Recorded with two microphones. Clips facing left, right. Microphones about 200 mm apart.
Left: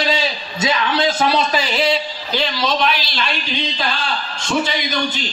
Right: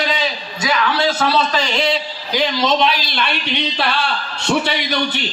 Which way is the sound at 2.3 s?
15° right (ahead or behind).